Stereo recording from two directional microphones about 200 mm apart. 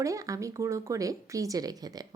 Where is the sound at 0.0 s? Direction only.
15° right (ahead or behind).